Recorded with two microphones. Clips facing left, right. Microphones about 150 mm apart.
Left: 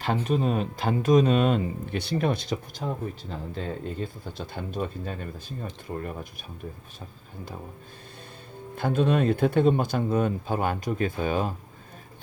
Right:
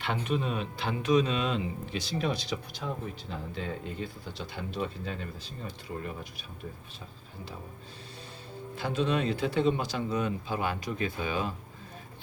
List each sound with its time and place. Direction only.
0.0 s speech: 40° left (ahead or behind)
8.7 s speech: 50° left (ahead or behind)